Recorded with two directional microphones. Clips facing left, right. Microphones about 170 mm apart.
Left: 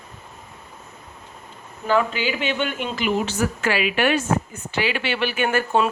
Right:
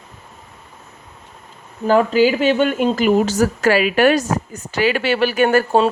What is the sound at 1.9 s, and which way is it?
Speech, 40° right (ahead or behind).